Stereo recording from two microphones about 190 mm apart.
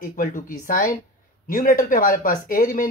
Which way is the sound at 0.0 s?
45° left (ahead or behind).